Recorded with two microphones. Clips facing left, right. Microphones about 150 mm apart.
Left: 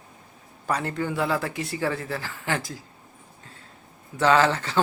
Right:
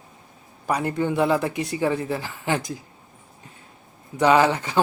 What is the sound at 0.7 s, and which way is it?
Speech, 15° right (ahead or behind).